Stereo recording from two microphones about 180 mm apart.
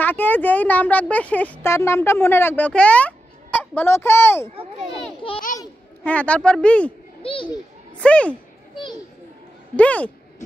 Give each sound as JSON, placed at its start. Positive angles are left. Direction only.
{"t": 0.0, "sound": "speech", "side_deg": 10}
{"t": 5.2, "sound": "a child's voice", "side_deg": 30}
{"t": 6.0, "sound": "speech", "side_deg": 5}
{"t": 8.0, "sound": "a sound", "side_deg": 5}
{"t": 9.8, "sound": "speech", "side_deg": 10}